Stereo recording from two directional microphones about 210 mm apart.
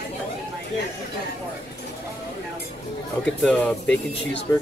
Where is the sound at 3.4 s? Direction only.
5° left (ahead or behind).